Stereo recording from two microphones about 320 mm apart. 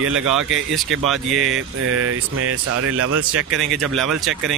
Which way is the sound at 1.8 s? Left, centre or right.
Right.